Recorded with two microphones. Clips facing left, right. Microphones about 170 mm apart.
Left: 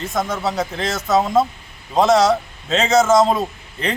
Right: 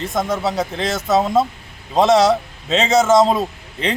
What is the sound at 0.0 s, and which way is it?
Speech, centre (ahead or behind).